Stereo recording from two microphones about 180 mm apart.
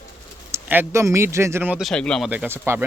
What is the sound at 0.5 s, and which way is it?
Speech, 10° right (ahead or behind).